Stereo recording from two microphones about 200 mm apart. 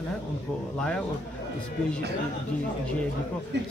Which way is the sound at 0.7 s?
5° left (ahead or behind).